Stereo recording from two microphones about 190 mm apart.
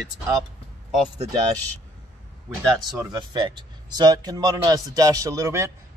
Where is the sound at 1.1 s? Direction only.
20° right (ahead or behind).